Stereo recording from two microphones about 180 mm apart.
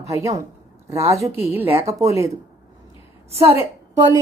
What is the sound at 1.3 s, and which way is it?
Speech, 35° left (ahead or behind).